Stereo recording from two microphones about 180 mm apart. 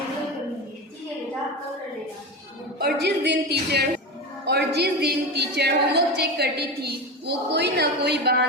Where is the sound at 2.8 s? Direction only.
65° right (ahead or behind).